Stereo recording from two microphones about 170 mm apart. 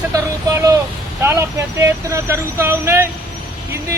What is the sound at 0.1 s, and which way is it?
Speech, 20° right (ahead or behind).